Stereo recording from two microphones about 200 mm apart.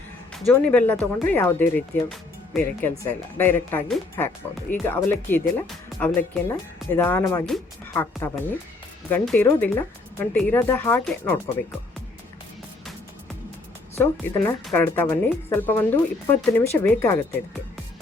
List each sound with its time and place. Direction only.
0.3 s speech: 5° left (ahead or behind)
14.0 s speech: 15° left (ahead or behind)